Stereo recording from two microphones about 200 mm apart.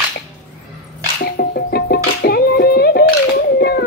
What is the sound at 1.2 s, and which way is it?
Music, 50° left (ahead or behind).